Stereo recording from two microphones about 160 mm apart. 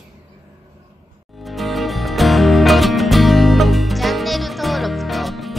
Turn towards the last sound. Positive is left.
turn(degrees=0)  # may be behind; listen again after turning